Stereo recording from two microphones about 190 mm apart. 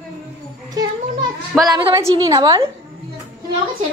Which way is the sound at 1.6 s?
20° right (ahead or behind).